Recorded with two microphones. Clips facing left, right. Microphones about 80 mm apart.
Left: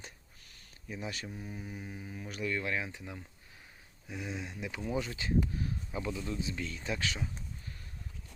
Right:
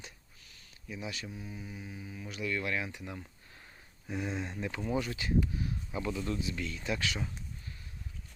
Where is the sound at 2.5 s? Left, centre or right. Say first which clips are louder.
Right 1 dB; left.